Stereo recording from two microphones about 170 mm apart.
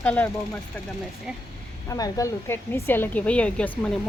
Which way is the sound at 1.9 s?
20° left (ahead or behind).